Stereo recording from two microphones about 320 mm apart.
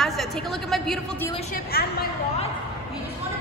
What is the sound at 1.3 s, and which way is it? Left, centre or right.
A woman's voice, left.